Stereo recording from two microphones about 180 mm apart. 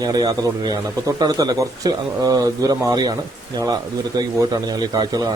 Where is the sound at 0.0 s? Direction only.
20° right (ahead or behind).